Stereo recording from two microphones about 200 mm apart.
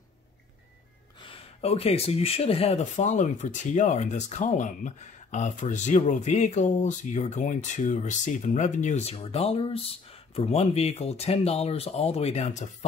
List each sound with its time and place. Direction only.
1.2 s speech: 30° left (ahead or behind)